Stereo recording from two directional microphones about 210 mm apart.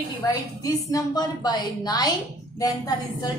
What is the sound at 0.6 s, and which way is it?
A woman's voice, 15° left (ahead or behind).